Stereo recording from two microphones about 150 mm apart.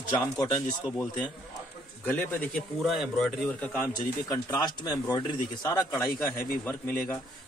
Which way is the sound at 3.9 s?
20° left (ahead or behind).